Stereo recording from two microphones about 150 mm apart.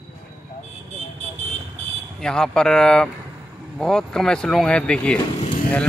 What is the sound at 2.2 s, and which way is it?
Speech, 5° left (ahead or behind).